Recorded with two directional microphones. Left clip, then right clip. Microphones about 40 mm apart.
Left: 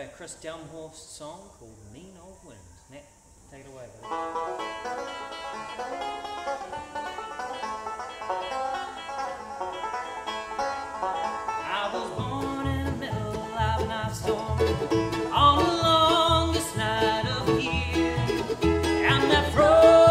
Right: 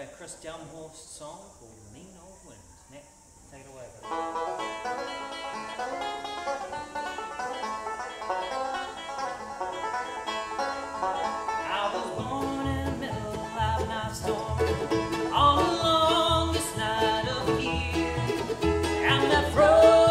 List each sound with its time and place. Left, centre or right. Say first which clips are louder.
0.0 s speech: left 2 dB; right
4.0 s speech: even; centre
4.6 s music: even; centre
13.8 s music: left 2 dB; right
14.4 s music: left 1 dB; right
14.8 s music: left 2 dB; centre
15.3 s music: left 2 dB; right
17.9 s music: left 2 dB; right
19.0 s music: even; right